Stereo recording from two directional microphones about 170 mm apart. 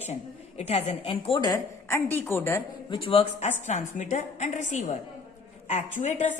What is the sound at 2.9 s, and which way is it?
Speech, 30° left (ahead or behind).